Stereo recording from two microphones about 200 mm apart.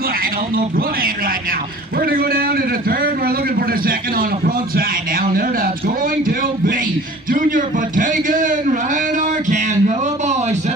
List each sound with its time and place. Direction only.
0.6 s a man's voice: 45° right (ahead or behind)
7.2 s a man's voice: 45° right (ahead or behind)
9.5 s a sound: 40° right (ahead or behind)